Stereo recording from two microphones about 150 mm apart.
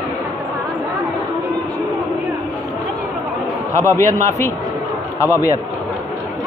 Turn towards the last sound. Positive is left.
turn(degrees=20)  # may be behind; listen again after turning